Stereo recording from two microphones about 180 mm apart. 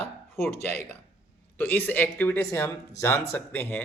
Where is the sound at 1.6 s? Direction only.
10° left (ahead or behind).